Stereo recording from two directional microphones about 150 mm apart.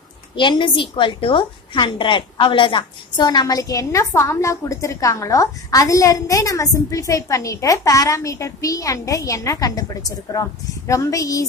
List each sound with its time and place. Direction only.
0.4 s a woman's voice: 35° left (ahead or behind)